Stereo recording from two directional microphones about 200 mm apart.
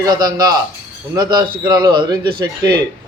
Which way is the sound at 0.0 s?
20° right (ahead or behind).